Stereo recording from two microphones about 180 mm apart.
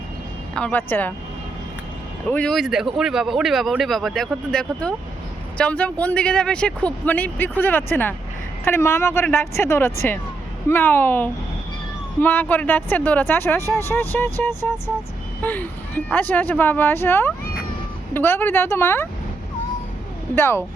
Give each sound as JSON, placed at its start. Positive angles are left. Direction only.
{"t": 0.5, "sound": "speech", "side_deg": 10}
{"t": 2.3, "sound": "speech", "side_deg": 5}
{"t": 20.3, "sound": "speech", "side_deg": 15}